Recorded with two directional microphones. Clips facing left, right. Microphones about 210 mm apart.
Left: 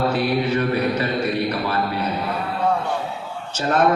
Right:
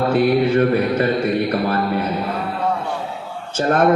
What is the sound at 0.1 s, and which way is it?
Mantra, 50° right (ahead or behind).